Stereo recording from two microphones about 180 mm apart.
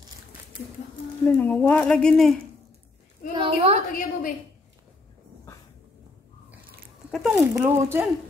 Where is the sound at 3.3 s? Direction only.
30° right (ahead or behind).